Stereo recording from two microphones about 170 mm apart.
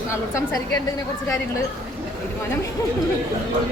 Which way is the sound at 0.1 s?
15° left (ahead or behind).